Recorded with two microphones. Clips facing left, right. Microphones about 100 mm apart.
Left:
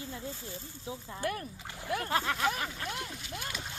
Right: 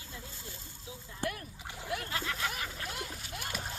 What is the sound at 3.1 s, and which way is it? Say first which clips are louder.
Speech: left 1 dB; 45° right (ahead or behind).